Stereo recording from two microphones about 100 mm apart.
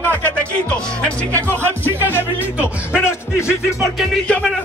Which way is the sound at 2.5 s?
15° right (ahead or behind).